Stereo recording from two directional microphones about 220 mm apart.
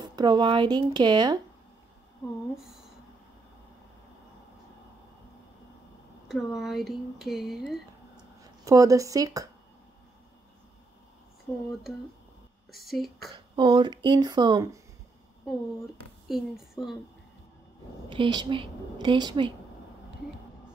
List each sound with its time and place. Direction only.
0.0 s speech: 20° right (ahead or behind)
2.5 s a sound: centre (ahead or behind)
6.2 s speech: centre (ahead or behind)
8.4 s speech: 15° right (ahead or behind)
12.7 s speech: centre (ahead or behind)
13.6 s speech: 20° right (ahead or behind)
16.3 s speech: centre (ahead or behind)
18.1 s speech: 20° right (ahead or behind)